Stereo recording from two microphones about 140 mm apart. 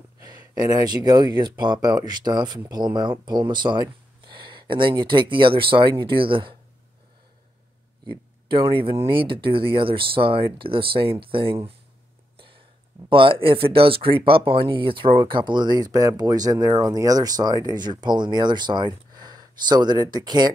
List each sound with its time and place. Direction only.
0.2 s speech: 30° right (ahead or behind)
8.1 s speech: 35° right (ahead or behind)
12.4 s a sound: 40° right (ahead or behind)
13.1 s speech: 40° right (ahead or behind)